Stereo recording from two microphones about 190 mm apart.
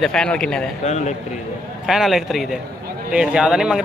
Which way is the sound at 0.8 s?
35° left (ahead or behind).